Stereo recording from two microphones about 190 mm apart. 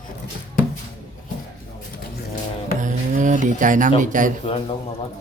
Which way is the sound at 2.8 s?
40° right (ahead or behind).